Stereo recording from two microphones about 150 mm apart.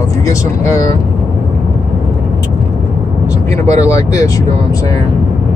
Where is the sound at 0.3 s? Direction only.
20° left (ahead or behind).